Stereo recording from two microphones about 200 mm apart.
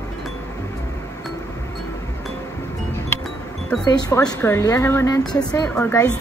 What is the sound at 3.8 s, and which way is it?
A woman's voice, 20° left (ahead or behind).